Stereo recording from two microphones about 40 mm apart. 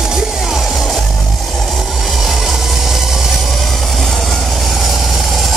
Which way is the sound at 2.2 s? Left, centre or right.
Centre.